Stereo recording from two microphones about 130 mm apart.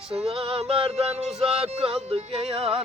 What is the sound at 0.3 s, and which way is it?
Music, 45° right (ahead or behind).